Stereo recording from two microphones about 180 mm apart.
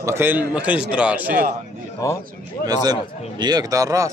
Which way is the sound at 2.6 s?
20° right (ahead or behind).